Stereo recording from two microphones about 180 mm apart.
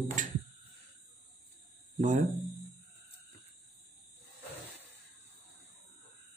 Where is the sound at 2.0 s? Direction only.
45° right (ahead or behind).